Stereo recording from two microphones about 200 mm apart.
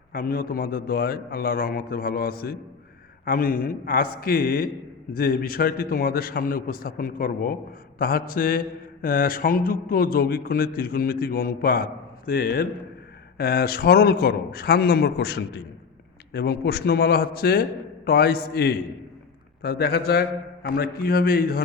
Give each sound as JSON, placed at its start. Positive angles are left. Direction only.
{"t": 0.1, "sound": "mantra", "side_deg": 50}